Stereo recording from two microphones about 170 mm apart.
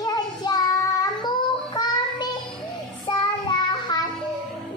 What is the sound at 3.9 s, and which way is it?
Music, 25° left (ahead or behind).